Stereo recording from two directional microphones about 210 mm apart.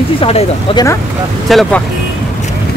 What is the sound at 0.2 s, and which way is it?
Speech, 25° left (ahead or behind).